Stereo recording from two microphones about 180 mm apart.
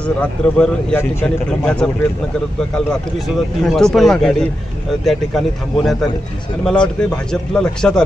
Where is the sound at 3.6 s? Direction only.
5° left (ahead or behind).